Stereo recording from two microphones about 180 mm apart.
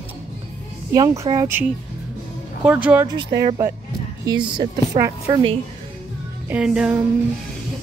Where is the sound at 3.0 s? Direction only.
20° right (ahead or behind).